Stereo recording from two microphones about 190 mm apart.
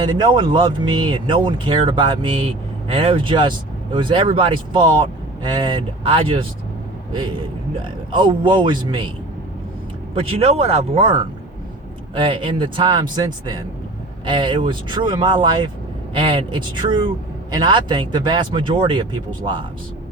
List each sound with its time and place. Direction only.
0.0 s speech: 25° right (ahead or behind)
10.2 s speech: 30° right (ahead or behind)
12.1 s speech: 25° right (ahead or behind)